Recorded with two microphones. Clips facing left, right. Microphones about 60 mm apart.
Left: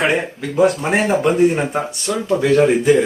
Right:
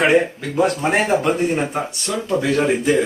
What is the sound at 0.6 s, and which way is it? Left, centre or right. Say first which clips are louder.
Speech: left 2 dB; centre.